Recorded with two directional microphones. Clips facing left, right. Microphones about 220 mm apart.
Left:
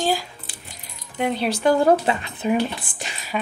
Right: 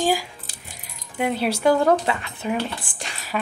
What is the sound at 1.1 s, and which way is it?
Speech, 5° right (ahead or behind).